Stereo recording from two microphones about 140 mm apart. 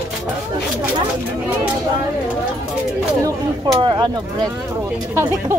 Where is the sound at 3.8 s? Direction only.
30° right (ahead or behind).